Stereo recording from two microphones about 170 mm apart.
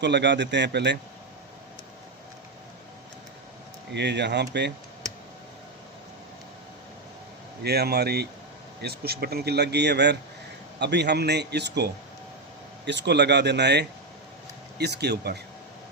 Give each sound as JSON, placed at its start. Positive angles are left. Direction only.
{"t": 0.0, "sound": "speech", "side_deg": -90}
{"t": 3.9, "sound": "speech", "side_deg": -90}
{"t": 7.6, "sound": "a man's voice", "side_deg": -70}
{"t": 12.8, "sound": "speech", "side_deg": -90}
{"t": 14.8, "sound": "speech", "side_deg": -75}